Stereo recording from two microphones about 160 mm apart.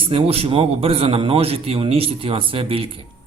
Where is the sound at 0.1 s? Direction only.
35° right (ahead or behind).